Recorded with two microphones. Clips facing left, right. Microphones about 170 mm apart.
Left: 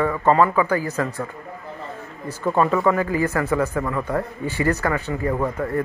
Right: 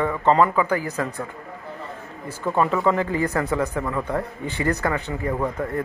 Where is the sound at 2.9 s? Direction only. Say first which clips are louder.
Left 1 dB; 25° right (ahead or behind).